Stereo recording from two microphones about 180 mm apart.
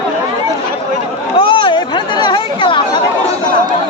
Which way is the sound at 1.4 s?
25° left (ahead or behind).